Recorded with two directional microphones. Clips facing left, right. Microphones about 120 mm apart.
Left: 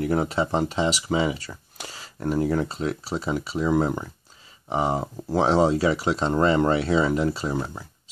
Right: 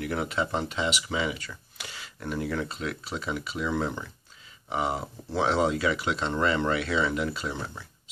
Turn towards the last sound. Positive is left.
turn(degrees=40)  # may be behind; listen again after turning